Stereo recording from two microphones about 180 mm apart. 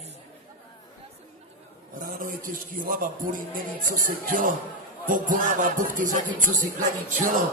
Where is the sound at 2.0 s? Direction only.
50° right (ahead or behind).